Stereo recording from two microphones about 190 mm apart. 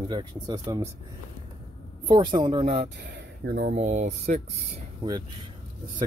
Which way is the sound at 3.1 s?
65° right (ahead or behind).